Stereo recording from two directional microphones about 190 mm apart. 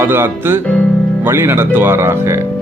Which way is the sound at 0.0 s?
10° right (ahead or behind).